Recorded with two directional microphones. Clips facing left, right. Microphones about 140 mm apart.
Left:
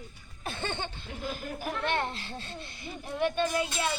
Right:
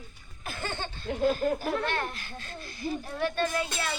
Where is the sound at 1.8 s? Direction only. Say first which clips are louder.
Left 1 dB; 25° left (ahead or behind).